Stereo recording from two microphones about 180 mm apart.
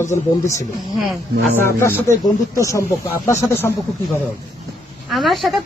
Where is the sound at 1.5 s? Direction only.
15° left (ahead or behind).